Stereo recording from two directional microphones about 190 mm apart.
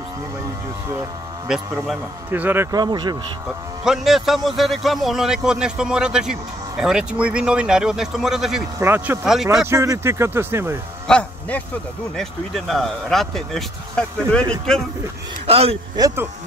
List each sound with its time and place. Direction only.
1.5 s speech: centre (ahead or behind); by 3.2 s 20° right (ahead or behind)
3.8 s speech: centre (ahead or behind)
9.6 s speech: 15° right (ahead or behind)
11.1 s a man's voice: 5° left (ahead or behind)
15.4 s speech: 30° right (ahead or behind)